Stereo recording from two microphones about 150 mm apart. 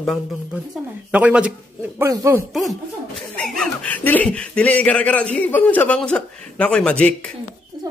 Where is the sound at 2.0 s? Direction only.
20° right (ahead or behind).